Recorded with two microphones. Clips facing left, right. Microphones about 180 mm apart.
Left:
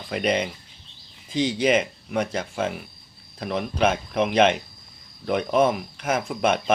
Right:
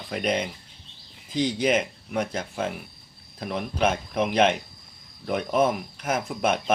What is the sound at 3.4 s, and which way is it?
Speech, 5° right (ahead or behind).